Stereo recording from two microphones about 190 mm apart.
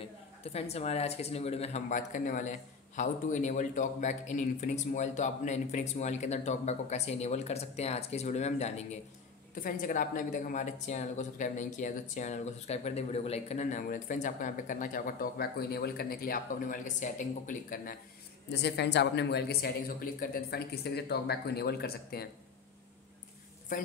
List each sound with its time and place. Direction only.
0.4 s a woman's voice: 35° left (ahead or behind)
18.5 s speech: 60° left (ahead or behind)